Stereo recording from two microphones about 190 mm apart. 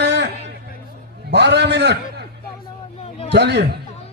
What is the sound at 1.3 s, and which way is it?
Speech, 65° right (ahead or behind).